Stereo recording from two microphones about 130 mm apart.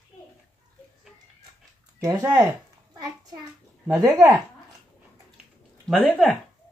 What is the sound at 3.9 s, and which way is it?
Speech, 25° right (ahead or behind).